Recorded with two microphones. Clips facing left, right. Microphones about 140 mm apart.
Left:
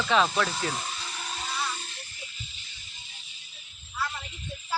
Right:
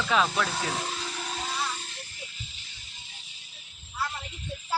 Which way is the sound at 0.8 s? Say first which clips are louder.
Right 3 dB; 90° right.